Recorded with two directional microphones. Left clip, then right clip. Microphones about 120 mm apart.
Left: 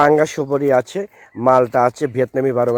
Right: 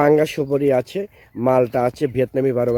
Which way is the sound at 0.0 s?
10° right (ahead or behind).